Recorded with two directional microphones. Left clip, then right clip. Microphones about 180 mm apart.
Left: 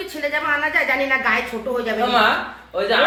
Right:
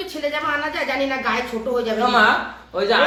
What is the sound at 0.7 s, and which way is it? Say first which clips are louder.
Speech: left 4 dB; 20° right (ahead or behind).